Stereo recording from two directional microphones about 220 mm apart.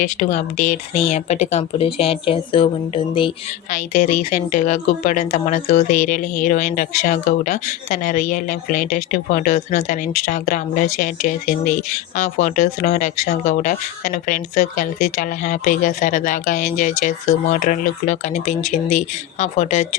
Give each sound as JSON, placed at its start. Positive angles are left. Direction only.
{"t": 0.0, "sound": "speech", "side_deg": 35}